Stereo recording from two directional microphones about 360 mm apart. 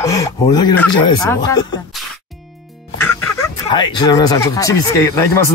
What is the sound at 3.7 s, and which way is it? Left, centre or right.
Speech, centre.